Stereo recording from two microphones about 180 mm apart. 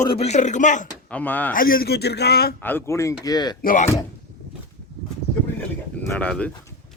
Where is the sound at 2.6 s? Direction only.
10° left (ahead or behind).